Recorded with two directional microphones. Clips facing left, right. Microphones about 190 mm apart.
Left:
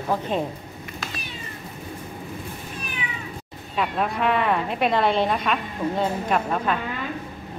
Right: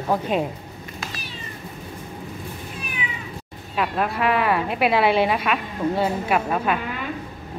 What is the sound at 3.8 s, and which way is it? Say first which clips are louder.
A woman's voice: right 1 dB; centre (ahead or behind).